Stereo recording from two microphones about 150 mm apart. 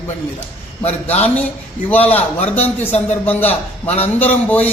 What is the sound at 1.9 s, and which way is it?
Speech, 10° left (ahead or behind).